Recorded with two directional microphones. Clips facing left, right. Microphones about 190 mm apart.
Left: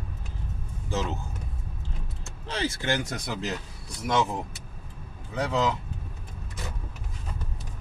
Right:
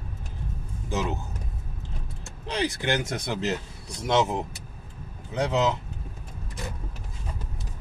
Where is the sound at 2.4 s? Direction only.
15° right (ahead or behind).